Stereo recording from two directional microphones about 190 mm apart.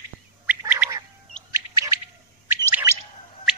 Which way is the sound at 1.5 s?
15° right (ahead or behind).